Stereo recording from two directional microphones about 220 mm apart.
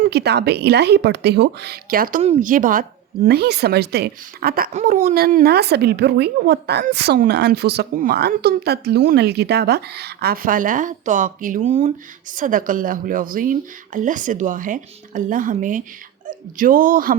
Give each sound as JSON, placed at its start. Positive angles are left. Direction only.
{"t": 0.0, "sound": "speech", "side_deg": -50}